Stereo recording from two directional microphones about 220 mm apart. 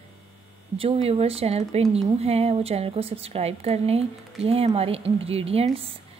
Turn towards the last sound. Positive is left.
turn(degrees=-25)  # may be behind; listen again after turning